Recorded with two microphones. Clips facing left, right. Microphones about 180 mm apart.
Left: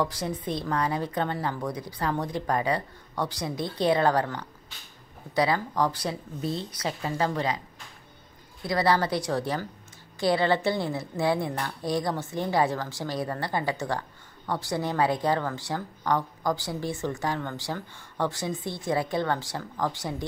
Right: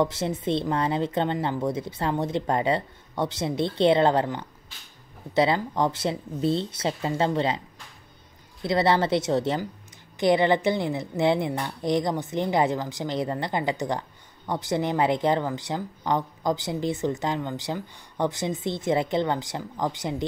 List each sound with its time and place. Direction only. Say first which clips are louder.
0.0 s a woman's voice: right 4 dB; 25° right (ahead or behind)
8.6 s a woman's voice: right 2 dB; 25° right (ahead or behind)